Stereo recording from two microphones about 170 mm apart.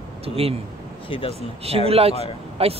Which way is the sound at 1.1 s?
30° left (ahead or behind).